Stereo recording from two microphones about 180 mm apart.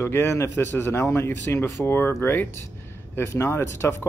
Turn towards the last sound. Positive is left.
turn(degrees=15)  # may be behind; listen again after turning